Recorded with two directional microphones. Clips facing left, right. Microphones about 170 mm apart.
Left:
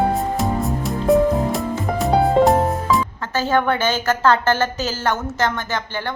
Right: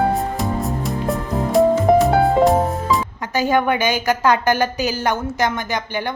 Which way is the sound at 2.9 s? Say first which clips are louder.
Even; 15° right (ahead or behind).